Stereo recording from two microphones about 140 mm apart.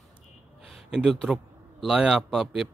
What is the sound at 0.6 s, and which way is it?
A man's voice, centre (ahead or behind).